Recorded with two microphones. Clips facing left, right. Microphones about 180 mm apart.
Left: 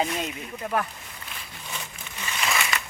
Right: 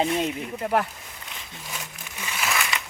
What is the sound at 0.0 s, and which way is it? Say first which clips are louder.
Speech: right 4 dB; 25° right (ahead or behind).